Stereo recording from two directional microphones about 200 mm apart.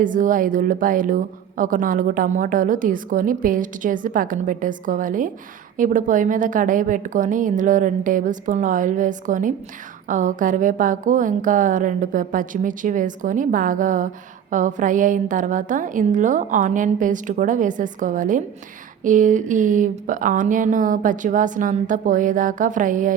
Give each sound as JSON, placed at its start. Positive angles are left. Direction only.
{"t": 0.0, "sound": "a woman's voice", "side_deg": -40}